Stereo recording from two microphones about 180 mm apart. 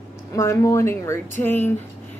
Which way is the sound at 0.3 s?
15° left (ahead or behind).